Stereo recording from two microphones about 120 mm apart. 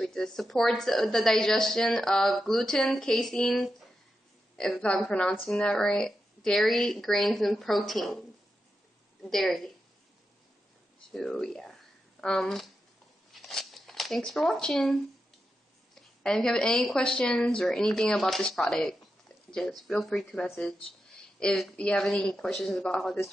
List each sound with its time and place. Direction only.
0.0 s a woman's voice: 5° left (ahead or behind)
9.2 s a woman's voice: centre (ahead or behind)
11.1 s a woman's voice: centre (ahead or behind)
13.3 s a sound: centre (ahead or behind)
15.9 s a woman's voice: 5° left (ahead or behind)
21.4 s a woman's voice: 5° left (ahead or behind)